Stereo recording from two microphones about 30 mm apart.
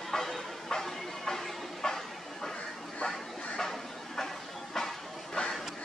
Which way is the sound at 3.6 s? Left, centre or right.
Centre.